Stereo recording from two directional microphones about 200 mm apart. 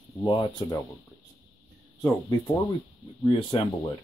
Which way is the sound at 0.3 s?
20° left (ahead or behind).